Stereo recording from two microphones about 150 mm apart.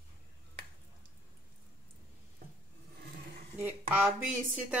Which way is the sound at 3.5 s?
15° right (ahead or behind).